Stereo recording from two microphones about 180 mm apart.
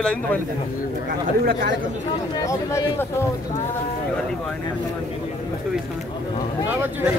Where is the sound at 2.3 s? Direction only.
15° left (ahead or behind).